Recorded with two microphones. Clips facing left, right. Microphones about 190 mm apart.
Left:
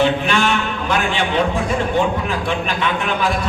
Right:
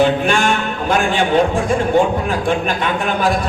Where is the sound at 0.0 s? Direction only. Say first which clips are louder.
Right 2 dB; 45° right (ahead or behind).